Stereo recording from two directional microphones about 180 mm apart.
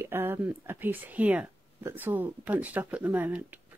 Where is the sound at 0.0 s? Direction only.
10° right (ahead or behind).